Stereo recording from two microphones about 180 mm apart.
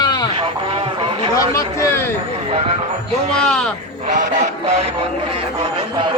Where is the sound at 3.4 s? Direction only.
5° left (ahead or behind).